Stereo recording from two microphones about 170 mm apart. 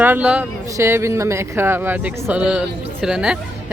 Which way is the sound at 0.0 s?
10° right (ahead or behind).